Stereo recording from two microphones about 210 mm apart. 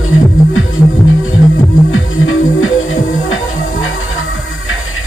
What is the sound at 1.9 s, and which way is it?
Music, 70° left (ahead or behind).